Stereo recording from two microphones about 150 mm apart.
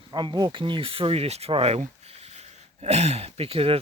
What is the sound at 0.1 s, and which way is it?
Speech, 30° right (ahead or behind).